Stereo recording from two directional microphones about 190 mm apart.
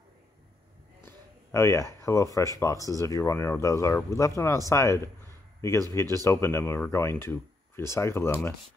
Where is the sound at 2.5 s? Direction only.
15° left (ahead or behind).